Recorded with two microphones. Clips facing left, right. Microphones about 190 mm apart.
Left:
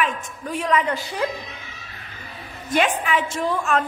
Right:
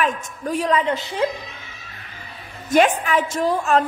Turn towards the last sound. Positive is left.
turn(degrees=-35)  # may be behind; listen again after turning